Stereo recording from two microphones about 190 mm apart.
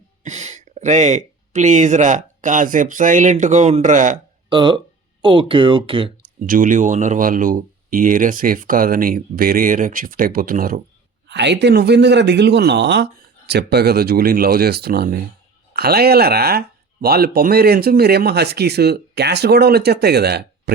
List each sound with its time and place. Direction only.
0.2 s speech: 40° right (ahead or behind)
4.4 s speech: 25° right (ahead or behind)
6.4 s speech: 45° right (ahead or behind)
11.3 s speech: 65° right (ahead or behind)